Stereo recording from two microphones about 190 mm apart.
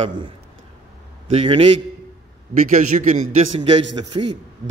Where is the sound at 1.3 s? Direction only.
30° right (ahead or behind).